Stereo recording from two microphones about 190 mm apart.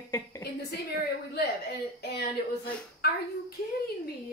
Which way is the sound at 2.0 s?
60° left (ahead or behind).